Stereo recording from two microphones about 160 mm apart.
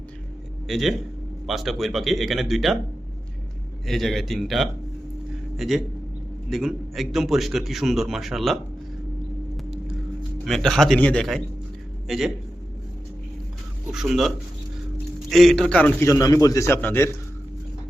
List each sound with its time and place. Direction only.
0.7 s a man's voice: centre (ahead or behind)
3.8 s a man's voice: centre (ahead or behind)
10.4 s a man's voice: centre (ahead or behind)
13.9 s a man's voice: centre (ahead or behind); by 17.1 s 15° left (ahead or behind)